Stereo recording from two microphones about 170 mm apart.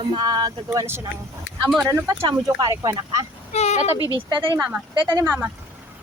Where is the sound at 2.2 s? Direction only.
25° right (ahead or behind).